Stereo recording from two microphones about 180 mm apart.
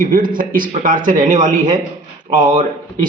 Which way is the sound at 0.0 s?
50° right (ahead or behind).